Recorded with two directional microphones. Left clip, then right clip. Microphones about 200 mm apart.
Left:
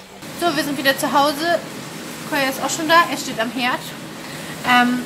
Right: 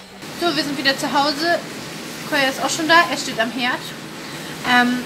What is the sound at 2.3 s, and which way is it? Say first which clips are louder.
Speech: right 2 dB; 15° right (ahead or behind).